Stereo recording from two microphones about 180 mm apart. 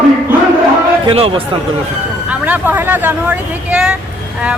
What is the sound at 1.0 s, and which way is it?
Speech, 35° right (ahead or behind).